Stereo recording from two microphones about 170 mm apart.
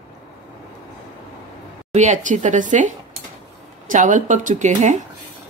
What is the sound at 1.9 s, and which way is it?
Speech, 45° right (ahead or behind).